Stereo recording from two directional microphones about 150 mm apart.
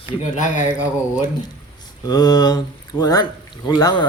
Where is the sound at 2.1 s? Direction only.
25° left (ahead or behind).